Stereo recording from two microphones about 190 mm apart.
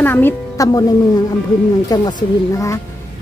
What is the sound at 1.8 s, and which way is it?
Speech, 20° left (ahead or behind).